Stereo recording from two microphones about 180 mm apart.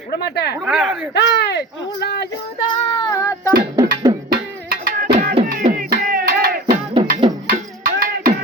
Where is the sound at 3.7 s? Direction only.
20° right (ahead or behind).